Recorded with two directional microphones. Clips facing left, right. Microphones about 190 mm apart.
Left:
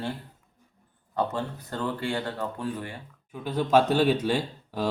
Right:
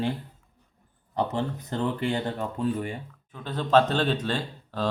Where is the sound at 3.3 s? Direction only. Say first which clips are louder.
Even; 10° left (ahead or behind).